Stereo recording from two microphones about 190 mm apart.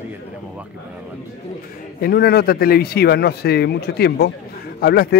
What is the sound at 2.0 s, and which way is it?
Speech, 55° left (ahead or behind).